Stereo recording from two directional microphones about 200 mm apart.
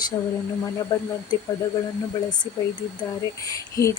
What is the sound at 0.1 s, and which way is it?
Speech, 15° left (ahead or behind).